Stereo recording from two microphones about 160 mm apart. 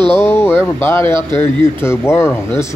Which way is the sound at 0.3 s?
15° left (ahead or behind).